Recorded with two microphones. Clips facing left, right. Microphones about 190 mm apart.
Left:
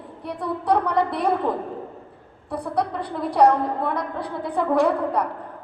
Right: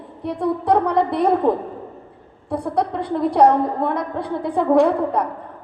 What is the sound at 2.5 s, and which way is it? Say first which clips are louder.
Music: right 3 dB; 25° right (ahead or behind).